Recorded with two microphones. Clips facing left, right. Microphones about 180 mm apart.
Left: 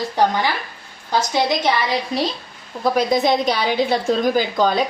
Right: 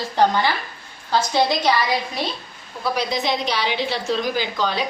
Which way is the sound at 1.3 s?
20° left (ahead or behind).